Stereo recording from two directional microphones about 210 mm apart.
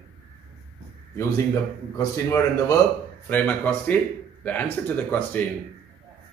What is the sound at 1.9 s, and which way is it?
Speech, 15° left (ahead or behind).